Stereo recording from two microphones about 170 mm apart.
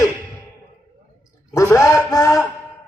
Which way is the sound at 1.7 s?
20° left (ahead or behind).